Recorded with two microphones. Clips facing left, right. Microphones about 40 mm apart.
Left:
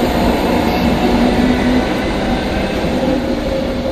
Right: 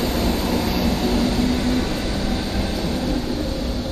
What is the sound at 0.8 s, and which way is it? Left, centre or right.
Train, left.